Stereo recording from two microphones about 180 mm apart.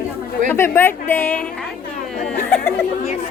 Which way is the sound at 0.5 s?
15° left (ahead or behind).